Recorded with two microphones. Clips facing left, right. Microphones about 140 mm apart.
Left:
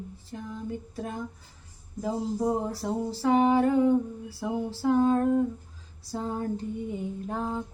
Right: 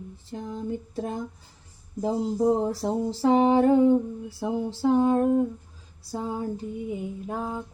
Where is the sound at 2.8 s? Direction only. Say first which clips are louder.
Right 2 dB; 30° right (ahead or behind).